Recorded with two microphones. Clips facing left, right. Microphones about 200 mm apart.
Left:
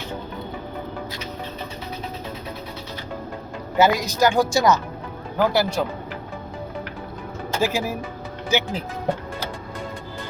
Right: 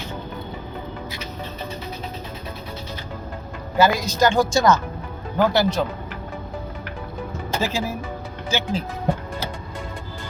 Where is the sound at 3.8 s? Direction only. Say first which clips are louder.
Even; 20° left (ahead or behind).